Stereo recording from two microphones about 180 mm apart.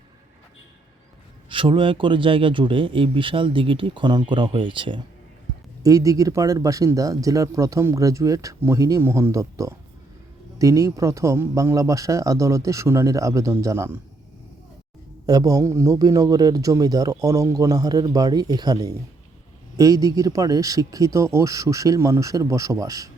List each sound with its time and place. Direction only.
1.5 s a man's voice: 30° right (ahead or behind)
15.3 s a man's voice: 20° right (ahead or behind)